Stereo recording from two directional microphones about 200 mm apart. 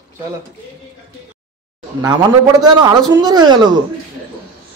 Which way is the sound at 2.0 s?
20° right (ahead or behind).